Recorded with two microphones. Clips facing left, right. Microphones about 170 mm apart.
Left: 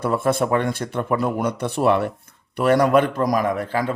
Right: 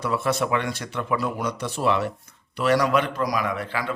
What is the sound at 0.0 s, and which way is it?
A man's voice, 50° left (ahead or behind).